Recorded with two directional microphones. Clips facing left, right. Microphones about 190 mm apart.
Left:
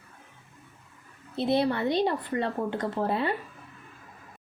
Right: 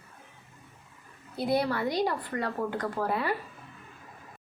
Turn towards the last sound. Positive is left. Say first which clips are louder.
# left 2 dB
turn(degrees=25)  # may be behind; listen again after turning